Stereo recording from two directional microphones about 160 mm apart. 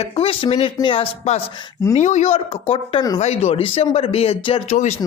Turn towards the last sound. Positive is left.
turn(degrees=35)  # may be behind; listen again after turning